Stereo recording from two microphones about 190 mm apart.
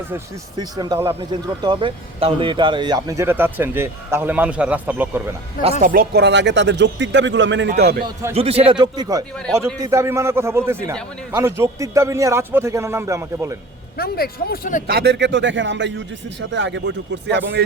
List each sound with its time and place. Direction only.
0.6 s a man's voice: 20° right (ahead or behind)
5.8 s a man's voice: 50° right (ahead or behind); by 7.7 s 70° right (ahead or behind)
7.8 s a man's voice: 55° right (ahead or behind)
8.3 s a man's voice: 30° right (ahead or behind); by 13.6 s 15° right (ahead or behind)
13.9 s speech: 55° left (ahead or behind)
14.8 s a man's voice: 60° right (ahead or behind)